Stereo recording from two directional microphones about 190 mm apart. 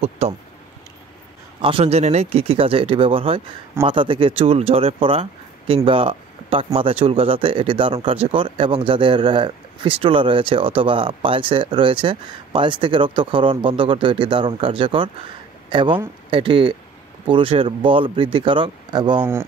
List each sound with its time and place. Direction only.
0.2 s speech: 35° right (ahead or behind)
1.6 s speech: 30° right (ahead or behind)